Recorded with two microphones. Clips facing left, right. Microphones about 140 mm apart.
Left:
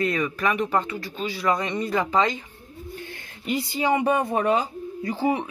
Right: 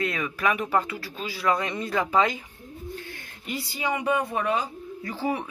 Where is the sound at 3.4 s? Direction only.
20° left (ahead or behind).